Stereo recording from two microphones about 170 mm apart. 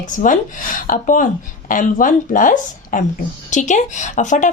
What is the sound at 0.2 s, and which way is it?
A woman's voice, 50° left (ahead or behind).